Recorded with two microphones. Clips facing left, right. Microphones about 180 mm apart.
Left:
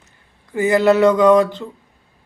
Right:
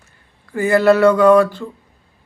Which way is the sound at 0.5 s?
20° left (ahead or behind).